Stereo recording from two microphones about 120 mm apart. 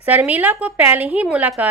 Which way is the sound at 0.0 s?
15° right (ahead or behind).